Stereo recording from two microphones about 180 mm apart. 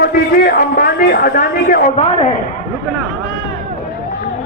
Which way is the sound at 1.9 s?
35° left (ahead or behind).